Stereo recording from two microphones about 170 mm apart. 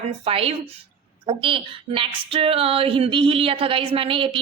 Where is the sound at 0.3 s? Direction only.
35° right (ahead or behind).